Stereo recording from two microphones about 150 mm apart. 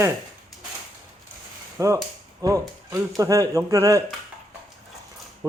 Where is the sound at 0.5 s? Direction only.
Centre (ahead or behind).